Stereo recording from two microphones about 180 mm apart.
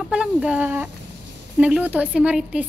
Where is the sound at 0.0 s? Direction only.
5° right (ahead or behind).